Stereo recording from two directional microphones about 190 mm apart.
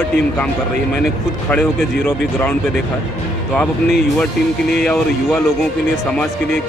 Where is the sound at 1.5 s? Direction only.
10° left (ahead or behind).